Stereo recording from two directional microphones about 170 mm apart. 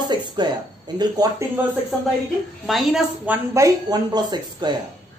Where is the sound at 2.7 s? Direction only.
Centre (ahead or behind); by 4.7 s 25° right (ahead or behind).